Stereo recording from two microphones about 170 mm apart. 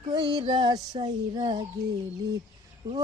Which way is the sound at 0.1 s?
25° right (ahead or behind).